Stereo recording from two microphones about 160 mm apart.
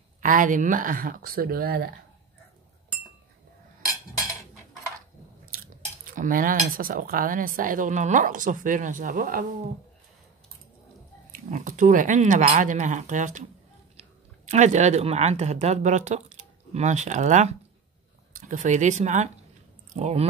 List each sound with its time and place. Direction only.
0.2 s speech: 55° right (ahead or behind); by 1.9 s 75° right (ahead or behind)
5.5 s chewing: 70° right (ahead or behind)
6.0 s speech: 60° right (ahead or behind)
11.3 s speech: 55° right (ahead or behind)